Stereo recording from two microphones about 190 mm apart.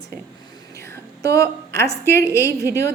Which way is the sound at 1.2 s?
15° left (ahead or behind).